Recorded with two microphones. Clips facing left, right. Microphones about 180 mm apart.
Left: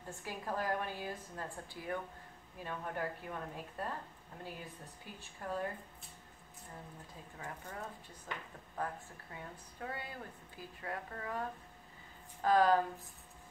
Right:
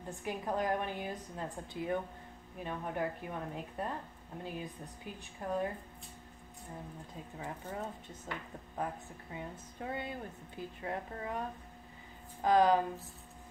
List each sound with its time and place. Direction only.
0.1 s speech: 20° right (ahead or behind)
7.3 s speech: 20° right (ahead or behind)